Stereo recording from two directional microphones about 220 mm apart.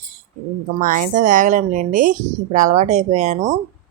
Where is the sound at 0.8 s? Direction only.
35° right (ahead or behind).